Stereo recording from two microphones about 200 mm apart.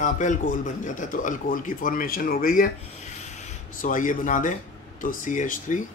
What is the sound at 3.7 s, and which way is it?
Speech, 40° left (ahead or behind).